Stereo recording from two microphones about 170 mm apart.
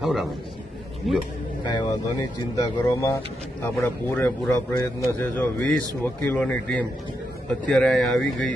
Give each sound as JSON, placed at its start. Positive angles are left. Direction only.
{"t": 0.0, "sound": "speech", "side_deg": 0}
{"t": 1.6, "sound": "speech", "side_deg": 25}